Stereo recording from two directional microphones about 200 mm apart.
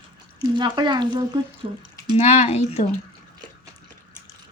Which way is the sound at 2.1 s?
30° left (ahead or behind).